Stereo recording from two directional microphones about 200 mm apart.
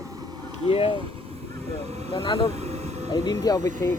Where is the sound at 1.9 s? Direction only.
30° right (ahead or behind).